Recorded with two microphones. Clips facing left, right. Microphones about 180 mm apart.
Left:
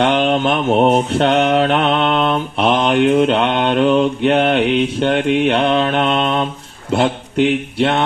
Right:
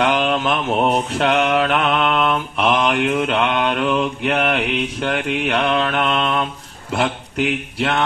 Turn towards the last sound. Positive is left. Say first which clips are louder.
# left 5 dB
turn(degrees=30)  # may be behind; listen again after turning